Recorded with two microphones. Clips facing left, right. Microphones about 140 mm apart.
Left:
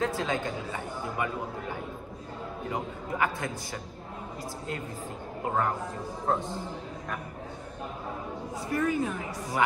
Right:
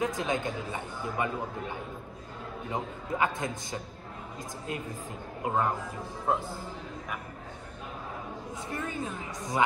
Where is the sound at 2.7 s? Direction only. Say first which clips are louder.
Right 1 dB; 20° right (ahead or behind).